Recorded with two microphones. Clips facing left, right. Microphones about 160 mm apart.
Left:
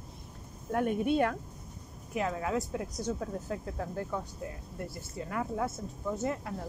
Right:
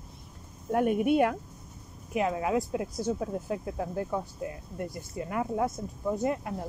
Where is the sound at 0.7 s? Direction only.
15° right (ahead or behind).